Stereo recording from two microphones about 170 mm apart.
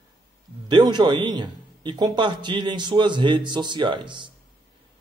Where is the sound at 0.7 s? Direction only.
25° right (ahead or behind).